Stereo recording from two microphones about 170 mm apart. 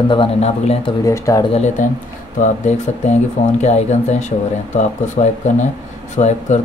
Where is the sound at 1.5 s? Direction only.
45° left (ahead or behind).